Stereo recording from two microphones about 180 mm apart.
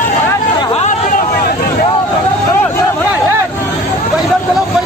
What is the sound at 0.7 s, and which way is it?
Hubbub, 40° left (ahead or behind).